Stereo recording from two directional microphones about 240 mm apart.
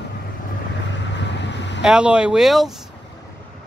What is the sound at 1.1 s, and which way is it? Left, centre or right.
Vehicle, left.